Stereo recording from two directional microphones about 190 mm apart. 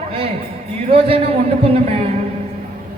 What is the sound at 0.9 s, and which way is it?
Speech, 30° right (ahead or behind).